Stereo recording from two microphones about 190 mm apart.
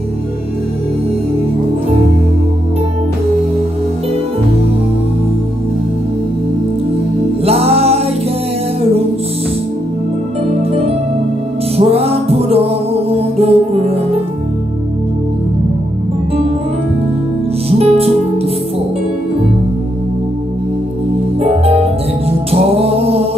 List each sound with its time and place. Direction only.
7.4 s music: 30° right (ahead or behind)
11.7 s music: 30° right (ahead or behind)
17.6 s music: 30° right (ahead or behind)
21.4 s music: 30° right (ahead or behind)